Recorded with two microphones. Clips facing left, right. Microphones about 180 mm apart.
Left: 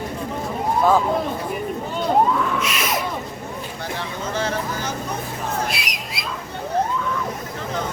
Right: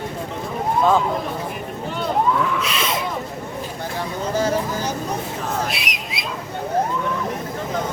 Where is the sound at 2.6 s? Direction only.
30° right (ahead or behind).